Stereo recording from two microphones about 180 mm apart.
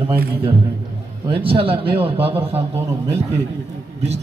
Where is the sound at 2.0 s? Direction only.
10° right (ahead or behind).